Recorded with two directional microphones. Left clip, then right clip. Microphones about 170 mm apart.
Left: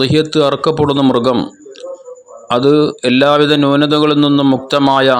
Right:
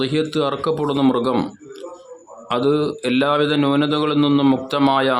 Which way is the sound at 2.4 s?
30° left (ahead or behind).